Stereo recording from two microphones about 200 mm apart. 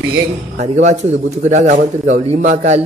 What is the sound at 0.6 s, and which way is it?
A man's voice, 35° right (ahead or behind).